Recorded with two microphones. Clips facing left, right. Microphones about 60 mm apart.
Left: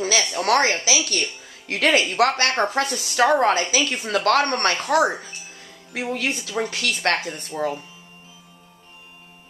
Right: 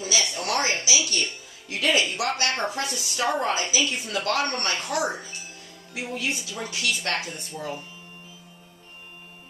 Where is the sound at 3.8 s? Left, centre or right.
Left.